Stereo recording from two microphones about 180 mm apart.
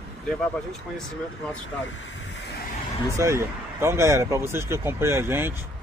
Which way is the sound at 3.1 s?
15° right (ahead or behind).